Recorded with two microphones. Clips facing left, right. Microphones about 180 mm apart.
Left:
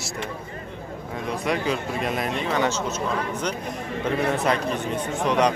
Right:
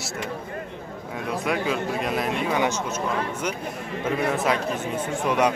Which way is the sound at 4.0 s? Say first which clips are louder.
Left 1 dB; centre (ahead or behind).